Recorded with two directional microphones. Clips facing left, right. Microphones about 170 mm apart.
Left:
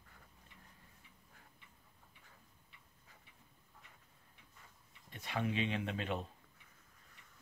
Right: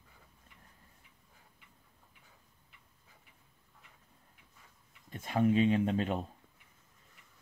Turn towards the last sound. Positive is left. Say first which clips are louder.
# right 8 dB
turn(degrees=-40)  # may be behind; listen again after turning